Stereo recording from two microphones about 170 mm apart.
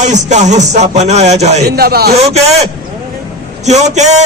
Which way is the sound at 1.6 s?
65° right (ahead or behind).